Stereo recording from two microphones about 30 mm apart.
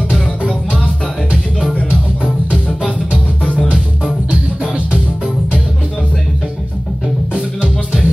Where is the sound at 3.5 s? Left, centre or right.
Left.